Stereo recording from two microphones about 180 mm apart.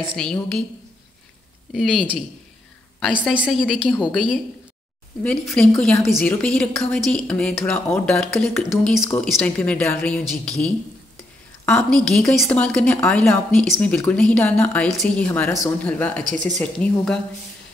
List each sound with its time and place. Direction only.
0.1 s a woman's voice: 5° left (ahead or behind)
1.7 s a woman's voice: centre (ahead or behind)
3.3 s a woman's voice: centre (ahead or behind)
16.3 s speech: 45° right (ahead or behind)
16.5 s a woman's voice: 5° left (ahead or behind)